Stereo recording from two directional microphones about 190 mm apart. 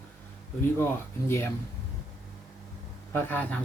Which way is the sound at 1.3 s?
15° left (ahead or behind).